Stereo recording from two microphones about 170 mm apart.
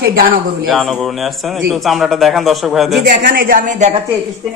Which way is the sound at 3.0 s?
55° right (ahead or behind).